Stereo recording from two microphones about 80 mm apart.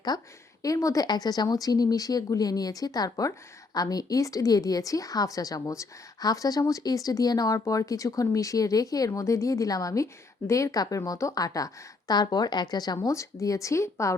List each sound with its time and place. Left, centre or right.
0.6 s a woman's voice: left
13.1 s speech: left